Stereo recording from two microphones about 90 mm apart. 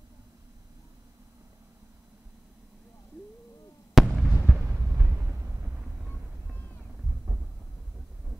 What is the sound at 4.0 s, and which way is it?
Fireworks, centre (ahead or behind).